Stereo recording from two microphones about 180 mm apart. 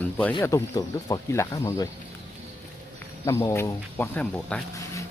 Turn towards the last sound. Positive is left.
turn(degrees=10)  # may be behind; listen again after turning